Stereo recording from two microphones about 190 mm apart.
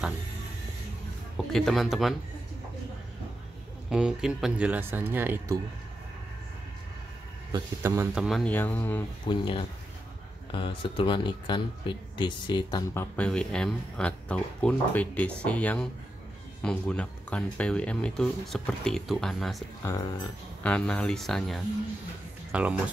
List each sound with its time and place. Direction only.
1.3 s speech: centre (ahead or behind)
3.9 s speech: 5° right (ahead or behind)
7.5 s speech: 15° right (ahead or behind); by 9.0 s 10° left (ahead or behind)
9.3 s speech: 25° left (ahead or behind)
13.1 s speech: 5° left (ahead or behind)
19.8 s speech: 15° left (ahead or behind)
20.6 s speech: 5° left (ahead or behind)